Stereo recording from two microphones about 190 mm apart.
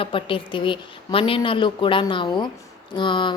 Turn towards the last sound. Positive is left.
turn(degrees=25)  # may be behind; listen again after turning